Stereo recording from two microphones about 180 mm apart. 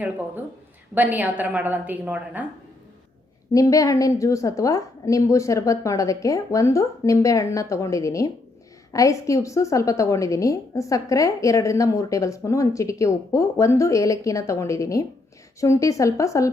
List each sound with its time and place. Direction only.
0.9 s a woman's voice: 10° right (ahead or behind)
3.5 s a woman's voice: 20° left (ahead or behind)